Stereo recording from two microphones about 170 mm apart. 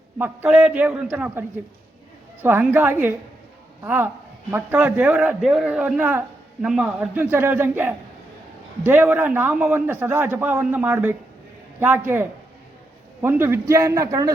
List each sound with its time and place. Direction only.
0.2 s a man's voice: 10° right (ahead or behind)